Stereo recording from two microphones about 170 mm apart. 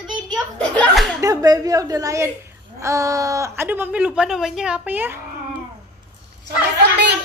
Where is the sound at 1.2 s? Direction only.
20° right (ahead or behind).